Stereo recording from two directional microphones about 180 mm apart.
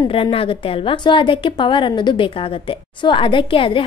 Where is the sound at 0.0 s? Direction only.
30° left (ahead or behind).